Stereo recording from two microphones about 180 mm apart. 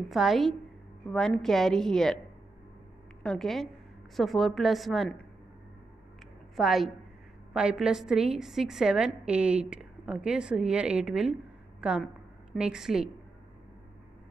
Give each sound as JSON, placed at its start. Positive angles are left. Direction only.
{"t": 0.1, "sound": "a woman's voice", "side_deg": 0}
{"t": 3.2, "sound": "a woman's voice", "side_deg": 5}
{"t": 6.5, "sound": "a woman's voice", "side_deg": 0}